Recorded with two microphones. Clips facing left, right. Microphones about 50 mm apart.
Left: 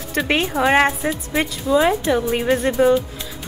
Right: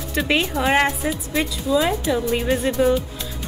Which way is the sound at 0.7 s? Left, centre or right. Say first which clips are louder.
Left 3 dB; left.